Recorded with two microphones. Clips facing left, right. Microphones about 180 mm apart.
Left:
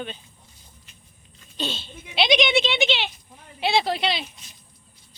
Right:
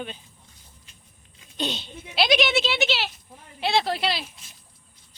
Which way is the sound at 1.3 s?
15° right (ahead or behind).